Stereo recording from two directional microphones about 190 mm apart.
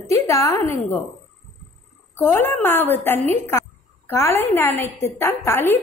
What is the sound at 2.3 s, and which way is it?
A woman's voice, 10° left (ahead or behind).